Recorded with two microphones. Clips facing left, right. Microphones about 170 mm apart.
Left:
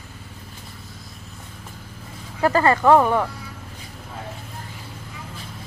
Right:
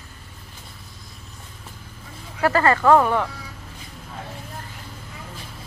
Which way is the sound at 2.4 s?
15° left (ahead or behind).